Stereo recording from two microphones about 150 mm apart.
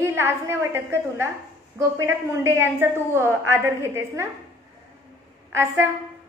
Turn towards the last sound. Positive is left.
turn(degrees=-15)  # may be behind; listen again after turning